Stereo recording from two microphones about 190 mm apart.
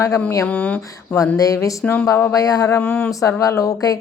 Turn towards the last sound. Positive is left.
turn(degrees=20)  # may be behind; listen again after turning